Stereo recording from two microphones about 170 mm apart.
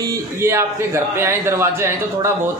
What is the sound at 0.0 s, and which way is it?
A man's voice, 15° right (ahead or behind).